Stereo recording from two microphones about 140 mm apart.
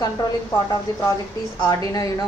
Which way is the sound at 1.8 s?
25° left (ahead or behind).